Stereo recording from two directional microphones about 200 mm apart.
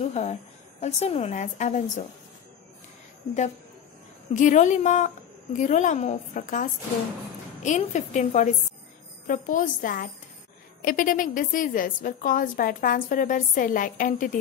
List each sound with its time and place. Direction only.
0.0 s a woman's voice: 30° left (ahead or behind)
4.3 s a woman's voice: 40° left (ahead or behind)